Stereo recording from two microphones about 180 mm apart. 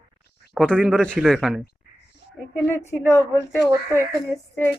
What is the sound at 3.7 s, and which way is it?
Speech, 15° right (ahead or behind).